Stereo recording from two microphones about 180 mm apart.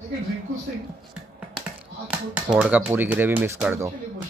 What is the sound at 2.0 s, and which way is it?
Speech, 5° right (ahead or behind).